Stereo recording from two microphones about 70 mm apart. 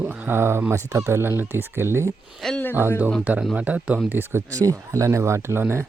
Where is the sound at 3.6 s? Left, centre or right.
Centre.